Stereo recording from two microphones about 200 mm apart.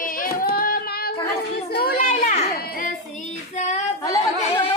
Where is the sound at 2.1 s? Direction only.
35° left (ahead or behind).